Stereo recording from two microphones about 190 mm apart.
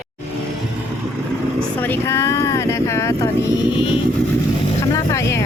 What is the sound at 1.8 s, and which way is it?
Speech, 10° left (ahead or behind).